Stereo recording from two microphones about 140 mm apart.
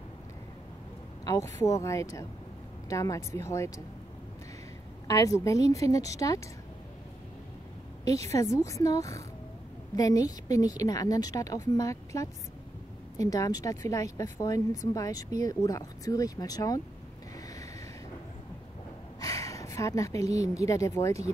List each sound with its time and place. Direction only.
1.2 s speech: 25° left (ahead or behind)
5.0 s speech: 25° left (ahead or behind)
8.0 s speech: 25° left (ahead or behind)
19.1 s a woman's voice: 25° left (ahead or behind)